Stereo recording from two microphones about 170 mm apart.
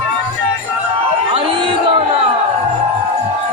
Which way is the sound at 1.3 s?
35° right (ahead or behind).